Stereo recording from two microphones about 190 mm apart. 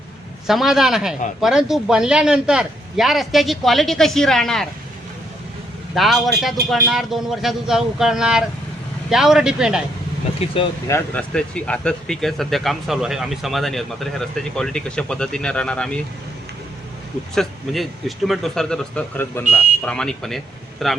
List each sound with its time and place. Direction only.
0.4 s speech: centre (ahead or behind)
5.9 s speech: centre (ahead or behind)
10.4 s speech: 30° left (ahead or behind)
10.8 s speech: 10° left (ahead or behind)
17.3 s speech: centre (ahead or behind)